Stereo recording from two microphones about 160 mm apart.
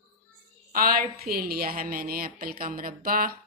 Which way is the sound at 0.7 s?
65° right (ahead or behind).